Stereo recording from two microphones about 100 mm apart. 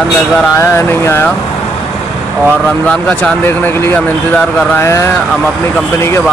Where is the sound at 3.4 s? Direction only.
20° left (ahead or behind).